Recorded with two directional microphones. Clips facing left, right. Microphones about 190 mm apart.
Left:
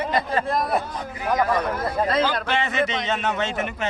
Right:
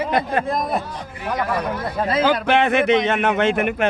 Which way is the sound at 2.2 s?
60° right (ahead or behind).